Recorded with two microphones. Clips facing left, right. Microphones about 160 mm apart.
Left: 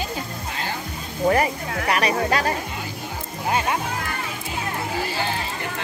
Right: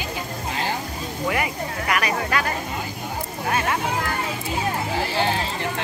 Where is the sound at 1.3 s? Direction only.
35° left (ahead or behind).